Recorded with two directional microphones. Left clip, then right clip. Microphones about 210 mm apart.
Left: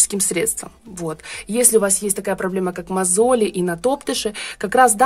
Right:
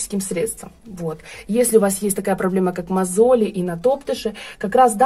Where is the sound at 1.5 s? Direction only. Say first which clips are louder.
Right 1 dB; 20° left (ahead or behind).